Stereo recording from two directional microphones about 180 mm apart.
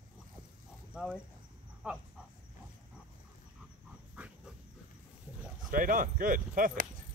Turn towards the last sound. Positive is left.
turn(degrees=-50)  # may be behind; listen again after turning